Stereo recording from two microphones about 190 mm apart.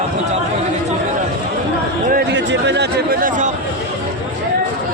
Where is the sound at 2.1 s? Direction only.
65° right (ahead or behind); by 3.5 s 45° right (ahead or behind).